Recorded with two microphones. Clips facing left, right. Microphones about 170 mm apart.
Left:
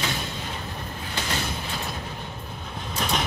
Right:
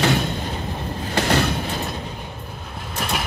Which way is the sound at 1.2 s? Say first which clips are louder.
Right 11 dB; 70° right (ahead or behind).